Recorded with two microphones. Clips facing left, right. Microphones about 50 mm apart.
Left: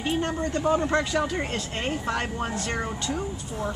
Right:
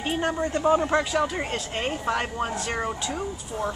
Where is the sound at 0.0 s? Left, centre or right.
Centre.